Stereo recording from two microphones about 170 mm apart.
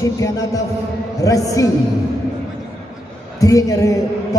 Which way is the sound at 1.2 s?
20° left (ahead or behind).